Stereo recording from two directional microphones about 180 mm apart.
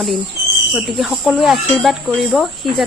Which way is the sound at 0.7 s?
Centre (ahead or behind).